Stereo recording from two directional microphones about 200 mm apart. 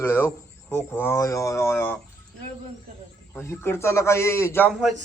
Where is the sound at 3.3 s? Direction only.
15° left (ahead or behind).